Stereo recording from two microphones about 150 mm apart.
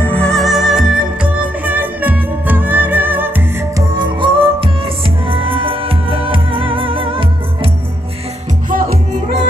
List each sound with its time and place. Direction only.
0.0 s music: 10° left (ahead or behind); by 3.8 s 10° right (ahead or behind)
3.9 s music: 30° right (ahead or behind)
8.6 s music: 65° right (ahead or behind)